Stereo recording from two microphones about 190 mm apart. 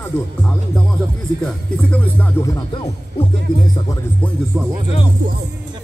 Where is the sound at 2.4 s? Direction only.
20° left (ahead or behind).